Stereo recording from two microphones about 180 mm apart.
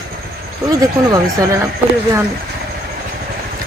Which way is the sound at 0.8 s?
20° right (ahead or behind).